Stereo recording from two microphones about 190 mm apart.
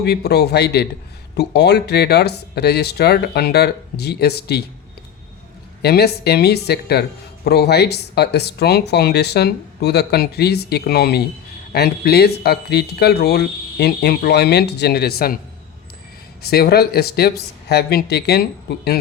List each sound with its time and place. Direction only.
0.0 s speech: 60° left (ahead or behind)
5.8 s speech: 55° left (ahead or behind)
16.4 s speech: 55° left (ahead or behind)